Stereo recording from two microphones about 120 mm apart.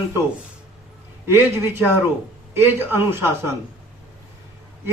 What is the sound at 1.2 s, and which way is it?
Speech, 20° right (ahead or behind).